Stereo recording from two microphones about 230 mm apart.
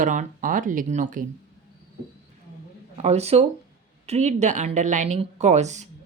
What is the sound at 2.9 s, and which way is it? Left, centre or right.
A woman's voice, right.